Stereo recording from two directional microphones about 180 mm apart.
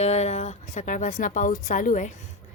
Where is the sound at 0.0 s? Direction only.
40° left (ahead or behind).